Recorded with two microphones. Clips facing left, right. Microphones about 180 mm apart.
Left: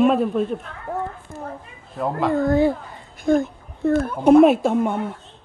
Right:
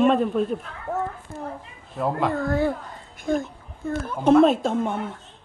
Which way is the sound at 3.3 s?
50° left (ahead or behind).